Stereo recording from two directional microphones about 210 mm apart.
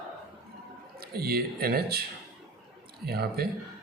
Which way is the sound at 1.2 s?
45° right (ahead or behind).